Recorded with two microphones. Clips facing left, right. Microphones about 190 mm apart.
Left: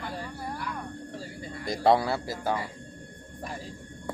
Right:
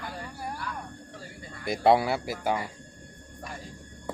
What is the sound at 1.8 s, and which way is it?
Speech, 10° right (ahead or behind).